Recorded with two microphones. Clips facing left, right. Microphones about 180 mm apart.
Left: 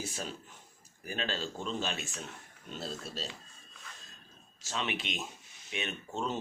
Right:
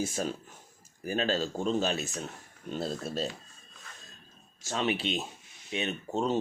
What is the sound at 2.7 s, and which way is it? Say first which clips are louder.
Speech: right 7 dB; 50° right (ahead or behind).